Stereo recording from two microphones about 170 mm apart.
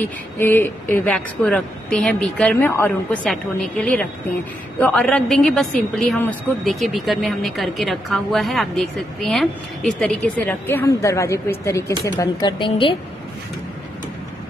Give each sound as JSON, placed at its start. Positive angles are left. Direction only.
{"t": 0.0, "sound": "a woman's voice", "side_deg": 10}